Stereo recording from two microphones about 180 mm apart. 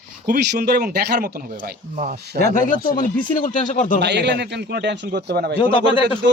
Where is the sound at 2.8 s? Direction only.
50° left (ahead or behind).